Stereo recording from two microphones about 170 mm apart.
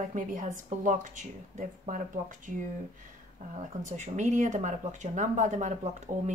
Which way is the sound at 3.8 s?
45° right (ahead or behind).